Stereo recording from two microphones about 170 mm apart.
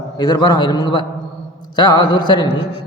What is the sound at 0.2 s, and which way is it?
A man's voice, 25° left (ahead or behind).